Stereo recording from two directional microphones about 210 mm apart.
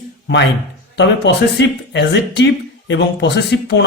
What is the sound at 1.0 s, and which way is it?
A man's voice, 55° left (ahead or behind).